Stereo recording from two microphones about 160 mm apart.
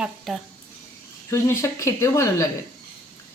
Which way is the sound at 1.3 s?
20° left (ahead or behind).